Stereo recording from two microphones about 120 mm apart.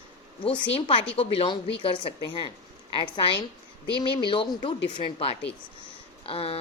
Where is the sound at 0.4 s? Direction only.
45° left (ahead or behind).